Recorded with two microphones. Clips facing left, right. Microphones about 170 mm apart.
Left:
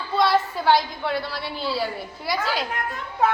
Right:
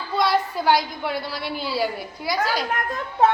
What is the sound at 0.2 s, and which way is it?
A woman's voice, centre (ahead or behind).